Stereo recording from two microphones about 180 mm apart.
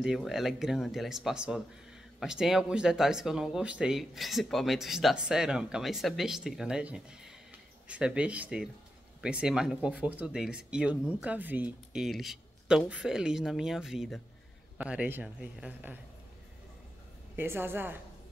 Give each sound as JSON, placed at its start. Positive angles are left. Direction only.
{"t": 0.0, "sound": "speech", "side_deg": 0}
{"t": 17.4, "sound": "speech", "side_deg": -10}